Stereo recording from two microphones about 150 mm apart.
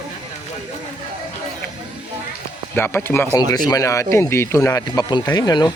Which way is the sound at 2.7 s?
15° left (ahead or behind).